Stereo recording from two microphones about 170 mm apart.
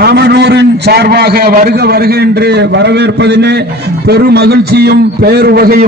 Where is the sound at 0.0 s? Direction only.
75° right (ahead or behind).